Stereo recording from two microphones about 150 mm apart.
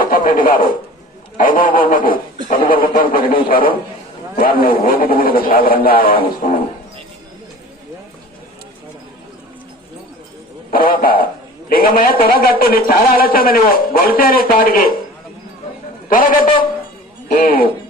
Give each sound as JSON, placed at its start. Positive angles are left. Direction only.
{"t": 0.0, "sound": "radio", "side_deg": 70}
{"t": 1.4, "sound": "a man's voice", "side_deg": 65}
{"t": 10.7, "sound": "a man's voice", "side_deg": 75}
{"t": 16.0, "sound": "a man's voice", "side_deg": 70}